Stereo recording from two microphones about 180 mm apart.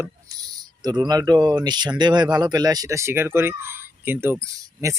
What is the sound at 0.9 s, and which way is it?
Speech, 20° right (ahead or behind).